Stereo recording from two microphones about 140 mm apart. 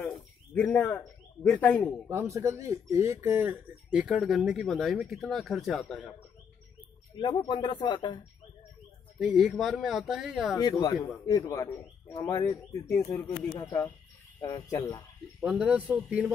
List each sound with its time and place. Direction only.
0.6 s speech: 10° left (ahead or behind)
2.0 s speech: 20° right (ahead or behind); by 6.1 s centre (ahead or behind)
7.2 s speech: 35° left (ahead or behind)
9.2 s speech: 5° right (ahead or behind)
10.6 s speech: 25° left (ahead or behind)
15.4 s speech: 5° right (ahead or behind)